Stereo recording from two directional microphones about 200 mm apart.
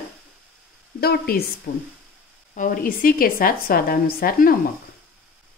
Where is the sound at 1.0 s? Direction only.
50° left (ahead or behind).